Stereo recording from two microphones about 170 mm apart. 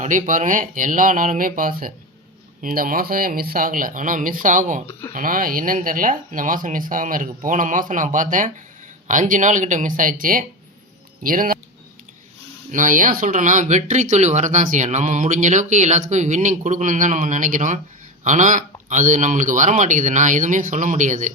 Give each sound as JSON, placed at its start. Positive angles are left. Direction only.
{"t": 0.0, "sound": "speech", "side_deg": -50}
{"t": 4.9, "sound": "a sound", "side_deg": 15}
{"t": 5.1, "sound": "speech", "side_deg": -55}
{"t": 12.7, "sound": "speech", "side_deg": -50}